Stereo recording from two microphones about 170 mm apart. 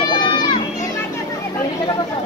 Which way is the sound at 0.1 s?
25° left (ahead or behind).